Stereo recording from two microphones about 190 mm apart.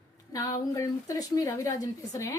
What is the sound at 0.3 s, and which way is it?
A woman's voice, 20° left (ahead or behind).